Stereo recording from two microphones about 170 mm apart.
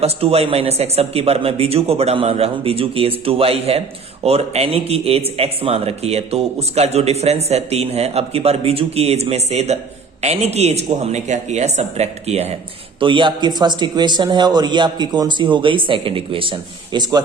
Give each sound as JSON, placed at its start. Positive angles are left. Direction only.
{"t": 0.0, "sound": "a man's voice", "side_deg": -35}